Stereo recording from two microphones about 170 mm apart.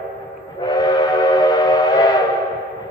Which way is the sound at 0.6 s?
25° left (ahead or behind).